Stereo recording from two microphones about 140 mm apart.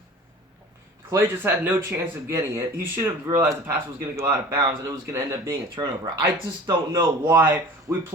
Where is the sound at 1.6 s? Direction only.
15° right (ahead or behind).